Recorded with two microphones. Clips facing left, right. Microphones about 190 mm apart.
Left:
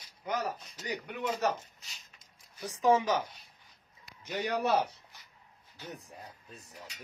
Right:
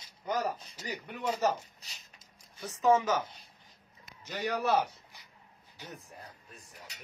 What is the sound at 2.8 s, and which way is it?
Speech, 15° left (ahead or behind).